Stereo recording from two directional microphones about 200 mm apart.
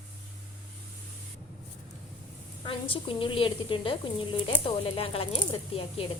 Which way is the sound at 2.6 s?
25° left (ahead or behind).